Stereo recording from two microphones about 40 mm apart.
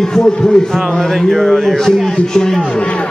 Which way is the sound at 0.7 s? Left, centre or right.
Centre.